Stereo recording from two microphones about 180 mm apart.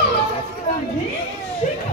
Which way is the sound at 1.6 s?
45° left (ahead or behind).